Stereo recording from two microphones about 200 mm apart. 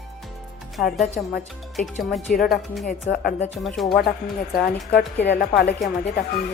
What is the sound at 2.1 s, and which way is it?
Speech, 45° left (ahead or behind).